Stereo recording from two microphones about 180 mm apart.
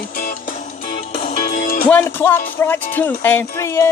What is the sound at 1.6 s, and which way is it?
Music, 50° left (ahead or behind).